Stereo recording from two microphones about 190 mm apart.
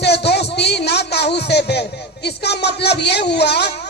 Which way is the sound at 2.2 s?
60° left (ahead or behind).